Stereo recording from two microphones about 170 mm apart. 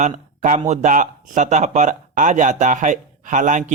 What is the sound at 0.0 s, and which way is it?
Speech, 45° right (ahead or behind).